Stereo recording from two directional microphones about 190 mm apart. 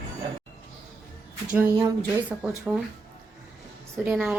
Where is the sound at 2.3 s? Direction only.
15° right (ahead or behind).